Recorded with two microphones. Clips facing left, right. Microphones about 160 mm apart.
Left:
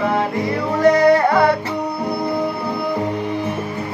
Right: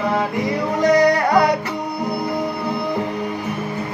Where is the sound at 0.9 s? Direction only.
15° right (ahead or behind).